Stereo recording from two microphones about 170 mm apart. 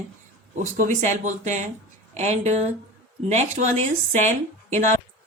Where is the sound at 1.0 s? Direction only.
45° right (ahead or behind).